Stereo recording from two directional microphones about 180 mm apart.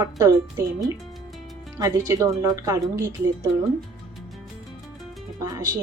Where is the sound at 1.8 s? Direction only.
20° right (ahead or behind).